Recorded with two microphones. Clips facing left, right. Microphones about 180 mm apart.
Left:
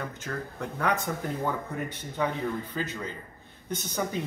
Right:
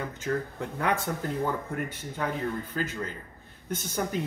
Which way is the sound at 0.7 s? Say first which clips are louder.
Even; 5° right (ahead or behind).